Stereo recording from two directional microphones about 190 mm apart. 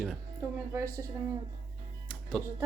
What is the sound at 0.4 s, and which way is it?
Speech, 15° right (ahead or behind).